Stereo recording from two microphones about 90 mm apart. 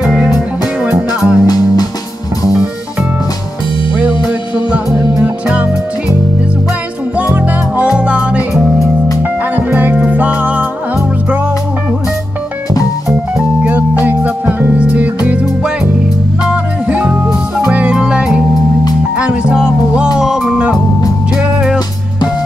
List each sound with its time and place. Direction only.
0.0 s music: 10° right (ahead or behind)
1.4 s music: 45° left (ahead or behind)
5.2 s music: 15° right (ahead or behind)
7.2 s music: 15° right (ahead or behind)
9.6 s music: 20° right (ahead or behind)
13.6 s music: 15° right (ahead or behind)